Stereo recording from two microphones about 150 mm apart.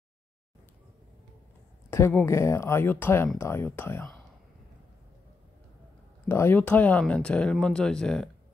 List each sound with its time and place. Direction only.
1.9 s speech: 15° left (ahead or behind)
6.2 s speech: 15° left (ahead or behind)